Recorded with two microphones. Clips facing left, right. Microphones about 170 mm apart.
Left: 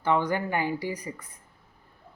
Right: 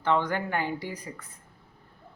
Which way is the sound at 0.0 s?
10° left (ahead or behind).